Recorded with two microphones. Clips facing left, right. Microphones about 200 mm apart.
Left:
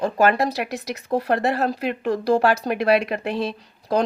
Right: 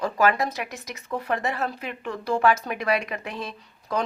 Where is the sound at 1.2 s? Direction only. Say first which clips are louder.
Left 5 dB; 80° left.